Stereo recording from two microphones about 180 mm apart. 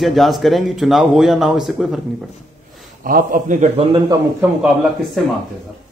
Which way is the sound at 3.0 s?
50° right (ahead or behind).